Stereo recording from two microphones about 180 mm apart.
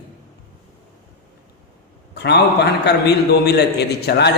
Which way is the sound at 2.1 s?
70° left (ahead or behind).